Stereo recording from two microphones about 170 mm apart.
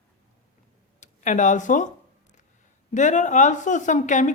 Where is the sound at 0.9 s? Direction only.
45° left (ahead or behind).